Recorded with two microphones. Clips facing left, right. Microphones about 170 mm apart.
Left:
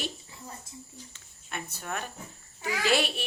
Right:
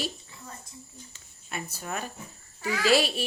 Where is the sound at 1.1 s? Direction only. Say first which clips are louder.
Right 2 dB; 5° right (ahead or behind).